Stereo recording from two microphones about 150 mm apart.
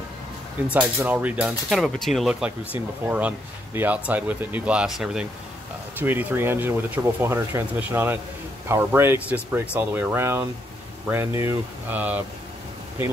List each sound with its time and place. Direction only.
0.7 s speech: 10° right (ahead or behind)